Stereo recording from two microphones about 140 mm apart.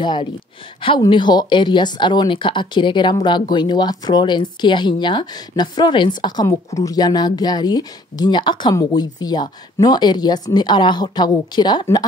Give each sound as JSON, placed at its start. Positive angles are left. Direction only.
{"t": 0.0, "sound": "speech", "side_deg": 35}